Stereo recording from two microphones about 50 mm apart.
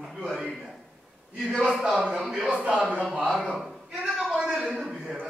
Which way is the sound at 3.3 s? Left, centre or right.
Centre.